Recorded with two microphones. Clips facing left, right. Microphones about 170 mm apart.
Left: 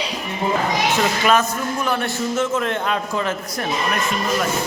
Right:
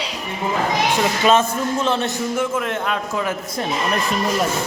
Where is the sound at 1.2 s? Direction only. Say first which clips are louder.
Right 2 dB; 25° right (ahead or behind).